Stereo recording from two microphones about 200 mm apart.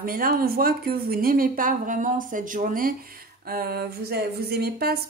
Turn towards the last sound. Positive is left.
turn(degrees=-50)  # may be behind; listen again after turning